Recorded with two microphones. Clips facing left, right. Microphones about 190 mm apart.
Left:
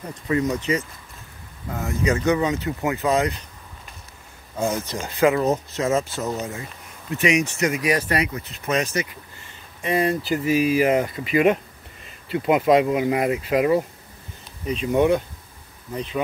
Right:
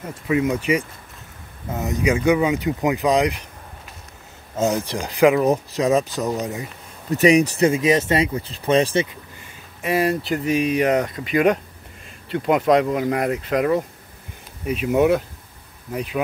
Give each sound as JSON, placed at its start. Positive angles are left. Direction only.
{"t": 0.0, "sound": "speech", "side_deg": -10}
{"t": 4.6, "sound": "speech", "side_deg": -20}
{"t": 7.1, "sound": "speech", "side_deg": -35}
{"t": 9.8, "sound": "speech", "side_deg": 0}
{"t": 14.7, "sound": "speech", "side_deg": -5}